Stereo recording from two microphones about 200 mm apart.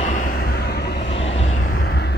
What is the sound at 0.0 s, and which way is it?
Vehicle, 40° left (ahead or behind).